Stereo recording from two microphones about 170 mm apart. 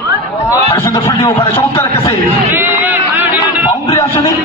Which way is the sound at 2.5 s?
15° right (ahead or behind).